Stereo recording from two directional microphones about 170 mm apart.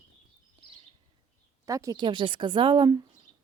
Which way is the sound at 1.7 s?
20° right (ahead or behind).